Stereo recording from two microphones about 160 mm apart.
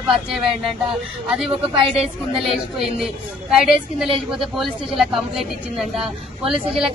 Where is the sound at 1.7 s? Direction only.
35° right (ahead or behind).